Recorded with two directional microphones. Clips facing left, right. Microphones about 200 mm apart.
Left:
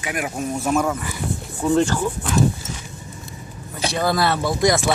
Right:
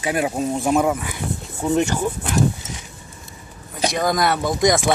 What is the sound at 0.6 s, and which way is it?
Speech, 15° right (ahead or behind).